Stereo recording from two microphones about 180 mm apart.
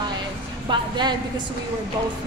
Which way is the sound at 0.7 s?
25° right (ahead or behind).